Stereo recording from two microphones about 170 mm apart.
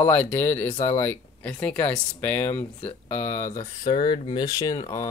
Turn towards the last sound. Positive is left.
turn(degrees=15)  # may be behind; listen again after turning